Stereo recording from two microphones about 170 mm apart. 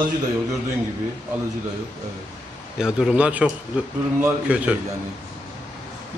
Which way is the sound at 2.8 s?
5° right (ahead or behind).